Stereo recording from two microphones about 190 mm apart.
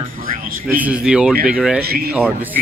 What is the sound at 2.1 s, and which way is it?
Speech, 5° right (ahead or behind).